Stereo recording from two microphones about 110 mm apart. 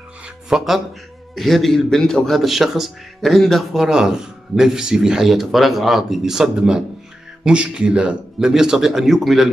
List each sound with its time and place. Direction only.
0.5 s a man's voice: 5° right (ahead or behind)